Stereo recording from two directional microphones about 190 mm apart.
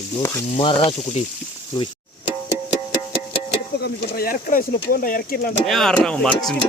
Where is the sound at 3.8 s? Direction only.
50° left (ahead or behind).